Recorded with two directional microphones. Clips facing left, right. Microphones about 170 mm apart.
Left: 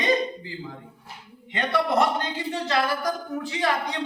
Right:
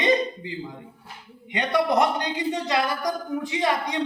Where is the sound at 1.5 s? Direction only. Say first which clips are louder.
Right 1 dB; 15° right (ahead or behind).